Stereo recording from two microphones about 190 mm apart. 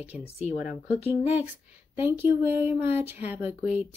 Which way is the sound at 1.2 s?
10° right (ahead or behind).